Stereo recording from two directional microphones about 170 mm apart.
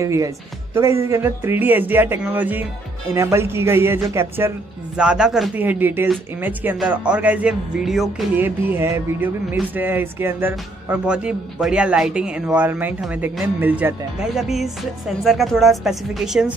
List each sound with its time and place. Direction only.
0.0 s speech: 15° right (ahead or behind); by 8.3 s centre (ahead or behind)
8.4 s speech: 10° right (ahead or behind)